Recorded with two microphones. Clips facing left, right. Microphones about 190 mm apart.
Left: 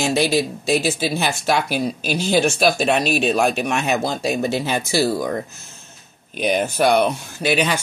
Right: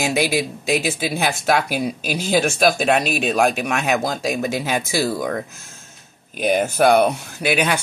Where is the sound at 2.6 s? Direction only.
Centre (ahead or behind).